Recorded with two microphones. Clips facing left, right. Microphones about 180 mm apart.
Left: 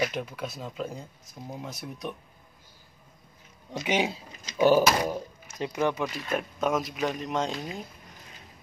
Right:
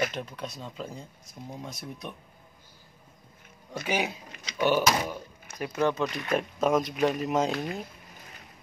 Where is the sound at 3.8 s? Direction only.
25° left (ahead or behind).